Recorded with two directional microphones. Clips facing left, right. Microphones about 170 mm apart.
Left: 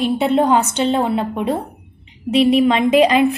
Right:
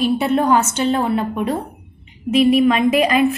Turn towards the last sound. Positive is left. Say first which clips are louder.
# left 2 dB
turn(degrees=25)  # may be behind; listen again after turning